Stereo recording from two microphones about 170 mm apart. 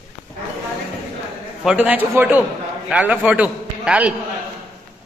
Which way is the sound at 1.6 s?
5° right (ahead or behind).